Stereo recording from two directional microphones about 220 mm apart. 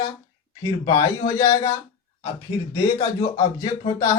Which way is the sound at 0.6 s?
15° left (ahead or behind).